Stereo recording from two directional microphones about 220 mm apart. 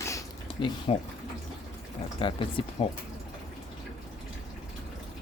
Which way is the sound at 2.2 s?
25° left (ahead or behind).